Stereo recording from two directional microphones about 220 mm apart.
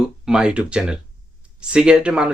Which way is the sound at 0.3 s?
5° right (ahead or behind).